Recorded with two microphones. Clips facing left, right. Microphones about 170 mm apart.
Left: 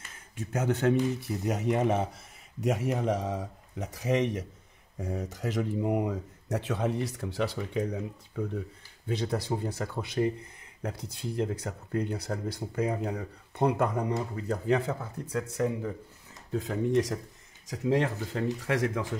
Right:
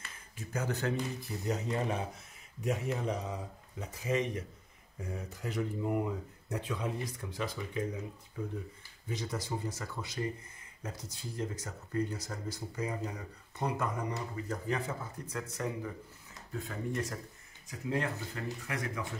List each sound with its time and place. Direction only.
0.4 s speech: 70° left (ahead or behind)
9.0 s speech: 65° left (ahead or behind)
16.5 s speech: 90° left